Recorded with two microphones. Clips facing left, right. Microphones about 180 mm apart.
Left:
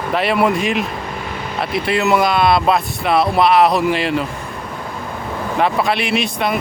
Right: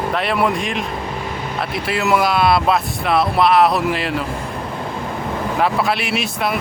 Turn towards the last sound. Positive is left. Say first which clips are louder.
# left 2 dB
turn(degrees=-5)  # may be behind; listen again after turning